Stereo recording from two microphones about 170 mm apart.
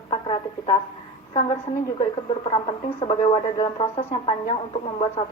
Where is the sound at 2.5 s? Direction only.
30° left (ahead or behind).